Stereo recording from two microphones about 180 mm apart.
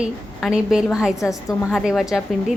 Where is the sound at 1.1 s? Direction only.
15° left (ahead or behind).